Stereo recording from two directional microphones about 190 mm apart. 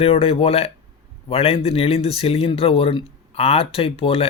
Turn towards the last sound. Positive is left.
turn(degrees=30)  # may be behind; listen again after turning